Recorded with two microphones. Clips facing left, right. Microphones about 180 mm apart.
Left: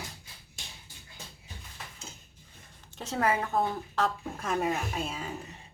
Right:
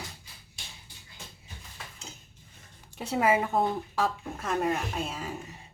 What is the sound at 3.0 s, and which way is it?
A child's voice, 10° right (ahead or behind).